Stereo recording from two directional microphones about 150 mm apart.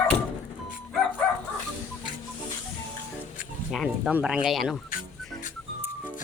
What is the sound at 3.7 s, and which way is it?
Speech, centre (ahead or behind).